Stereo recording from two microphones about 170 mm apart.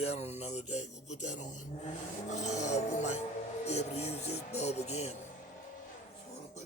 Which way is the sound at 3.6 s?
40° left (ahead or behind).